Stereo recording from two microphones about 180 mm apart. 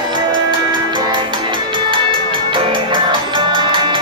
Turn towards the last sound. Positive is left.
turn(degrees=-25)  # may be behind; listen again after turning